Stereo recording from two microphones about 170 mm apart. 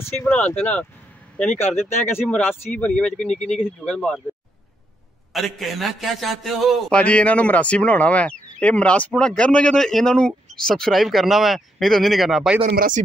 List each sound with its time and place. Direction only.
0.0 s a man's voice: 10° left (ahead or behind)
5.3 s a man's voice: centre (ahead or behind)
12.7 s speech: 55° right (ahead or behind)